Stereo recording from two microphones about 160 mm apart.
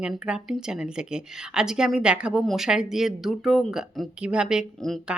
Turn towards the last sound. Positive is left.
turn(degrees=0)  # may be behind; listen again after turning